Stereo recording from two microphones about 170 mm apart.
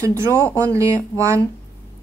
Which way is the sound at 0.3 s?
10° left (ahead or behind).